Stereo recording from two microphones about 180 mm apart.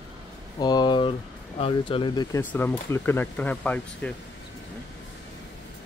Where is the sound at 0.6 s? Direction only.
20° left (ahead or behind).